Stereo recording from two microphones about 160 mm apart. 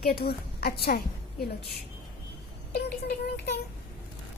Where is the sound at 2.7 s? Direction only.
85° left.